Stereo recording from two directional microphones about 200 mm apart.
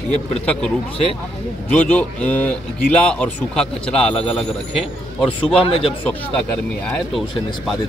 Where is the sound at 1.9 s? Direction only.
5° left (ahead or behind).